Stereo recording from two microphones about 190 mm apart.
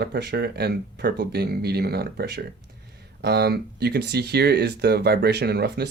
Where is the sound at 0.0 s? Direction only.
60° right (ahead or behind).